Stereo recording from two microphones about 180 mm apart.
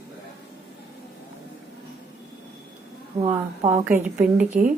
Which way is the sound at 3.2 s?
15° right (ahead or behind).